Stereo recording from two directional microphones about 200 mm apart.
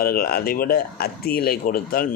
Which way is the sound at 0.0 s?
50° left (ahead or behind).